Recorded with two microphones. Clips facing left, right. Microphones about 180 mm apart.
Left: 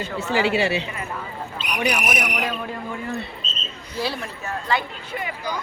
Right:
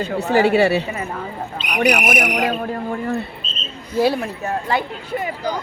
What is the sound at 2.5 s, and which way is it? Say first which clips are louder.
Speech: right 6 dB; 45° right (ahead or behind).